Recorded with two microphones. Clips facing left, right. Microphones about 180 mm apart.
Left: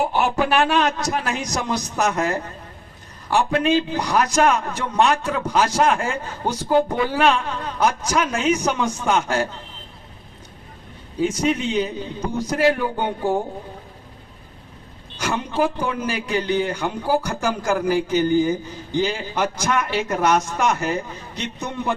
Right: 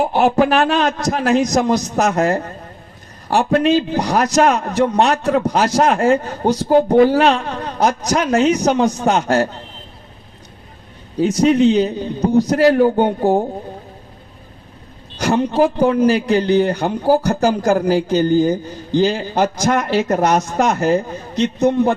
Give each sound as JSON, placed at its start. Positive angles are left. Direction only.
{"t": 0.0, "sound": "a man's voice", "side_deg": -40}
{"t": 11.3, "sound": "a man's voice", "side_deg": -35}
{"t": 15.2, "sound": "a man's voice", "side_deg": -35}